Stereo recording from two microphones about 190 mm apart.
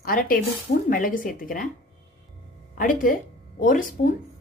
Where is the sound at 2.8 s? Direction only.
45° left (ahead or behind).